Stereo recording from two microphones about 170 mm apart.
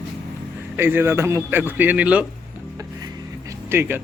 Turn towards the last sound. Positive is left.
turn(degrees=-15)  # may be behind; listen again after turning